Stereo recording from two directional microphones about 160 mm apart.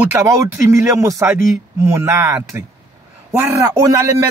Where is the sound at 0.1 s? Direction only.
15° right (ahead or behind).